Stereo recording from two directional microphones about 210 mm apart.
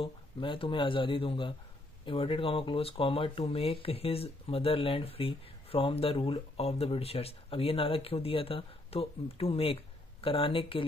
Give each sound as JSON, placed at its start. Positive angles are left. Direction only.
{"t": 0.0, "sound": "speech", "side_deg": 25}